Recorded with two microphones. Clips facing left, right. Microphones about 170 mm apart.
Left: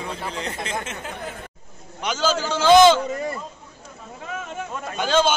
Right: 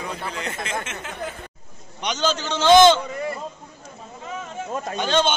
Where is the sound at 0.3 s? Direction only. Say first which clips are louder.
Even; 30° left (ahead or behind).